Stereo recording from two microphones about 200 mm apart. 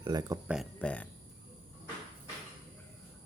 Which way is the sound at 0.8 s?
5° left (ahead or behind).